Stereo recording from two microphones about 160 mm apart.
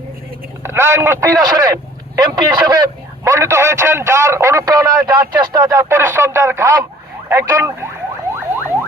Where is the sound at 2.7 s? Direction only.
20° right (ahead or behind).